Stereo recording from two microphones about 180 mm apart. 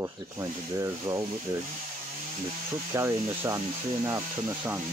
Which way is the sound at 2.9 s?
15° right (ahead or behind).